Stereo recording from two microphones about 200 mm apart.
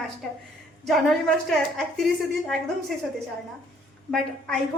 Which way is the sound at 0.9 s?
Centre (ahead or behind).